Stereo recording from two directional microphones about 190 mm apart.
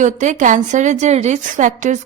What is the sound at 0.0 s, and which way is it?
A woman's voice, 40° right (ahead or behind).